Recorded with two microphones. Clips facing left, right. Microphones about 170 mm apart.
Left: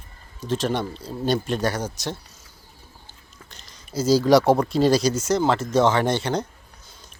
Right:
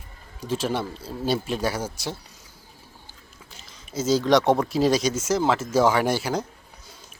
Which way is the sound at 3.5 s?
5° right (ahead or behind).